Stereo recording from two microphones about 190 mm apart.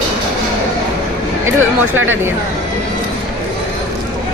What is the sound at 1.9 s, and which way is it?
Speech, 90° right.